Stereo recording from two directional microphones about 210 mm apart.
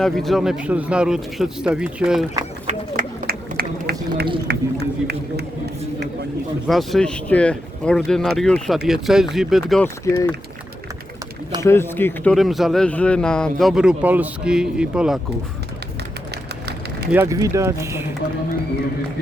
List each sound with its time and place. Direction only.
0.0 s a man's voice: centre (ahead or behind)
2.6 s run: 45° right (ahead or behind)
4.4 s speech: 50° right (ahead or behind)
6.7 s a man's voice: centre (ahead or behind)
10.1 s speech: 15° left (ahead or behind)
11.6 s a man's voice: 10° left (ahead or behind); by 15.2 s 5° right (ahead or behind)
17.1 s speech: 10° right (ahead or behind)